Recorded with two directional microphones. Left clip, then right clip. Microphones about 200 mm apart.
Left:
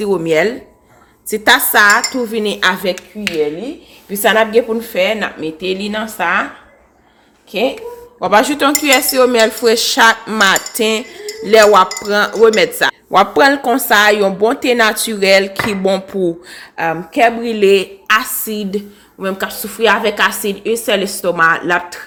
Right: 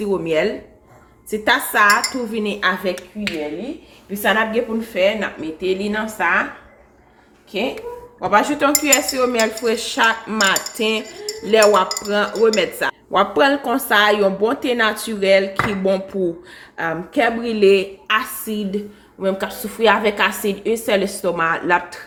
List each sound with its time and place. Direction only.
0.0 s speech: 45° left (ahead or behind)
4.1 s speech: 55° left (ahead or behind)
7.5 s speech: 45° left (ahead or behind)
11.4 s cutlery: 45° left (ahead or behind)